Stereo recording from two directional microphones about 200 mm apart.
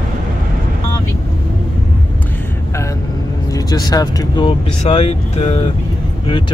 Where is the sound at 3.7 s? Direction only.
20° left (ahead or behind).